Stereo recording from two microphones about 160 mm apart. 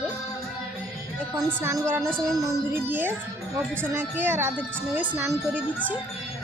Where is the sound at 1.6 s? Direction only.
15° right (ahead or behind).